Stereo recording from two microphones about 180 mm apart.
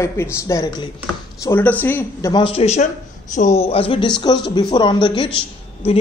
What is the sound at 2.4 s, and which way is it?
Speech, 35° left (ahead or behind).